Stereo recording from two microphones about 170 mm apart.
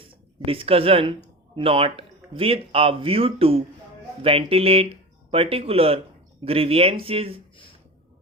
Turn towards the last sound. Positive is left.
turn(degrees=-35)  # may be behind; listen again after turning